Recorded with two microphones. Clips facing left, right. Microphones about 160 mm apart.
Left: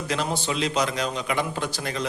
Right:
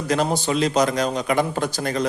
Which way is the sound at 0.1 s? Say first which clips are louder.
Right 7 dB; 45° right (ahead or behind).